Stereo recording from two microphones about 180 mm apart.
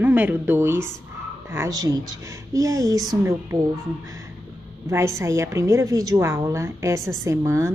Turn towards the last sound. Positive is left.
turn(degrees=-15)  # may be behind; listen again after turning